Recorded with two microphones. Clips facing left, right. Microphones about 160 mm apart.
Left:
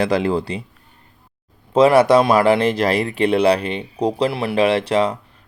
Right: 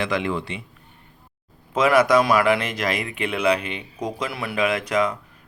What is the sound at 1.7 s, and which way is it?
Speech, 30° left (ahead or behind).